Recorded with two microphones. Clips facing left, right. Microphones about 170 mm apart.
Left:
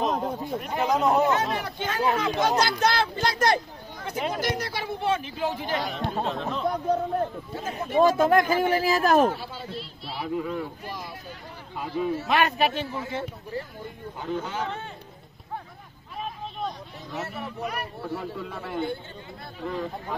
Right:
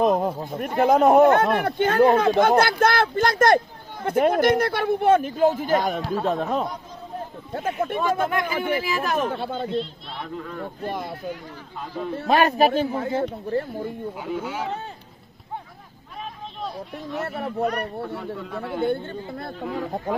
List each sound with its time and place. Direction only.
0.0 s speech: 55° right (ahead or behind)
6.7 s a man's voice: 65° left (ahead or behind)
7.5 s speech: 55° right (ahead or behind)
8.0 s speech: 35° left (ahead or behind)
9.3 s speech: 55° right (ahead or behind)
9.7 s a child's voice: 5° left (ahead or behind)
10.8 s speech: 55° right (ahead or behind)
11.8 s a child's voice: 10° left (ahead or behind)
12.3 s speech: 35° right (ahead or behind)
12.9 s speech: 55° right (ahead or behind)
14.2 s speech: 10° right (ahead or behind)
17.2 s speech: 55° right (ahead or behind)
18.0 s a man's voice: centre (ahead or behind)
18.9 s speech: 55° right (ahead or behind)